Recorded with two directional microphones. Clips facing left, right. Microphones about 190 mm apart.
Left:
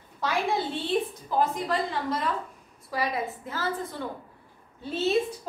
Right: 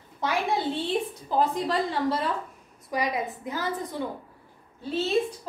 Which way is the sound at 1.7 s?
35° right (ahead or behind).